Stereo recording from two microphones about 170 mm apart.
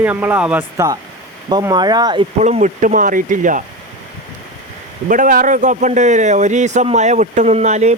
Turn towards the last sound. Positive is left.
turn(degrees=-40)  # may be behind; listen again after turning